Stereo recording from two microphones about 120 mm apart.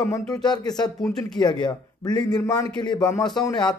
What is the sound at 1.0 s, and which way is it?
Speech, 5° left (ahead or behind).